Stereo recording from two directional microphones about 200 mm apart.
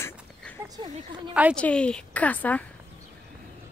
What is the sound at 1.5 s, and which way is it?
Speech, 5° left (ahead or behind).